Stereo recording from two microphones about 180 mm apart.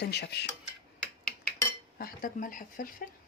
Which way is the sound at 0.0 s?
65° left (ahead or behind).